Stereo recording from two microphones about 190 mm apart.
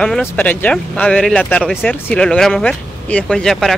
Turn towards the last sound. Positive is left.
turn(degrees=0)  # may be behind; listen again after turning